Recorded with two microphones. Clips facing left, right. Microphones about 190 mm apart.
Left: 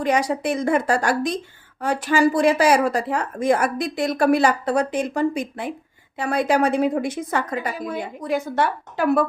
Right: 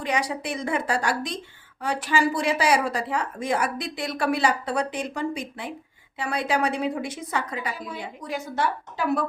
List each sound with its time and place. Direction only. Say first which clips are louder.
0.0 s a woman's voice: left 6 dB; 45° left (ahead or behind)